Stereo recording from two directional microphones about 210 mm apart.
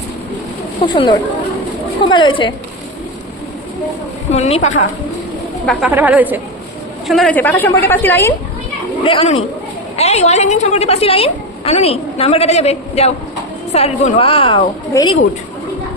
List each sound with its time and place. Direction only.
0.9 s a woman's voice: 20° left (ahead or behind)
4.3 s a woman's voice: 30° left (ahead or behind)
5.6 s speech: 5° right (ahead or behind)
7.1 s a woman's voice: 5° left (ahead or behind)
9.0 s a woman's voice: 30° left (ahead or behind)